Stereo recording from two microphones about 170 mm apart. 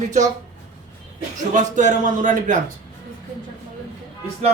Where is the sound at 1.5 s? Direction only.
45° right (ahead or behind).